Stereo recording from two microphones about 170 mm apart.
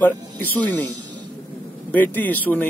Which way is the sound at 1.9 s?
10° left (ahead or behind).